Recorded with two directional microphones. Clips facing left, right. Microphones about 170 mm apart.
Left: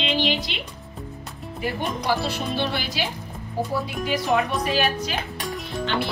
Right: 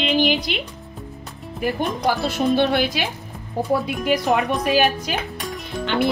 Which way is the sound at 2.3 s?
55° right (ahead or behind).